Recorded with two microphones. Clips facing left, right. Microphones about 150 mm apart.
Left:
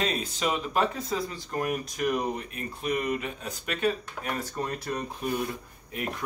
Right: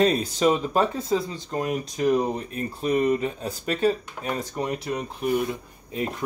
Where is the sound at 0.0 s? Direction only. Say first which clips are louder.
Right 9 dB; 35° right (ahead or behind); by 5.5 s 10° right (ahead or behind).